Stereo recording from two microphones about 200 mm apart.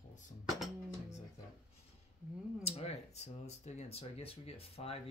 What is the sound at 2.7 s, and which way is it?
Speech, 30° left (ahead or behind).